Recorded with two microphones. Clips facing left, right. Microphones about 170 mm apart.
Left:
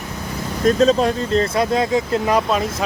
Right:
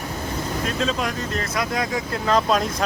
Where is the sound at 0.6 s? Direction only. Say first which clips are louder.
Left 12 dB; 40° left (ahead or behind).